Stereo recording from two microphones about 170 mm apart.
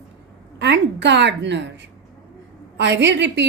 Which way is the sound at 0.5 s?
90° right.